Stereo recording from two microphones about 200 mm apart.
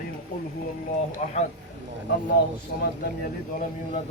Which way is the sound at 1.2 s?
35° left (ahead or behind).